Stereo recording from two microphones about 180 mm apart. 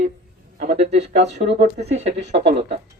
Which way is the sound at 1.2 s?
35° right (ahead or behind).